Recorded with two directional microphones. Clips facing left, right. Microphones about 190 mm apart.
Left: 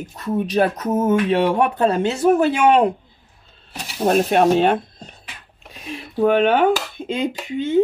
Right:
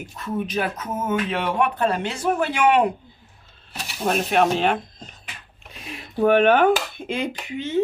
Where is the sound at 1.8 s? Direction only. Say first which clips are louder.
Left 5 dB; 25° left (ahead or behind).